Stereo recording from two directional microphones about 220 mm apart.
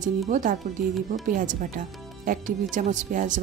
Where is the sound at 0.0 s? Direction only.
35° right (ahead or behind).